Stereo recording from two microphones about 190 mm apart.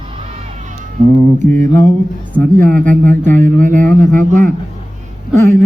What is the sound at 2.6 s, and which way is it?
Speech, 50° right (ahead or behind).